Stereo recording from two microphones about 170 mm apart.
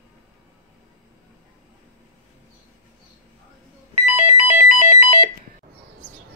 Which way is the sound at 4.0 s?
40° right (ahead or behind).